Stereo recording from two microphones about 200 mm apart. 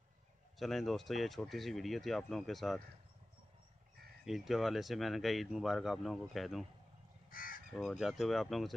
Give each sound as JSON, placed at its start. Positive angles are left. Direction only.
{"t": 0.6, "sound": "speech", "side_deg": 0}
{"t": 4.2, "sound": "speech", "side_deg": 0}
{"t": 7.2, "sound": "crow", "side_deg": 45}
{"t": 7.7, "sound": "speech", "side_deg": 0}